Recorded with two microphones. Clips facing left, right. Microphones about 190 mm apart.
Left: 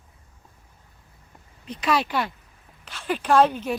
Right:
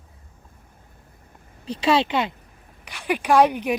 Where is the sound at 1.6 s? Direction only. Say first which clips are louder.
Right 4 dB; 30° right (ahead or behind).